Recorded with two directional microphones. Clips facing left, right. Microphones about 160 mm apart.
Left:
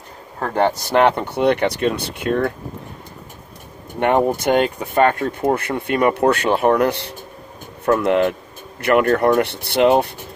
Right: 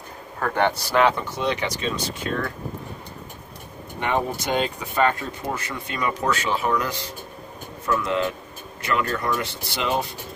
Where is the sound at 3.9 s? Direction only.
55° left (ahead or behind).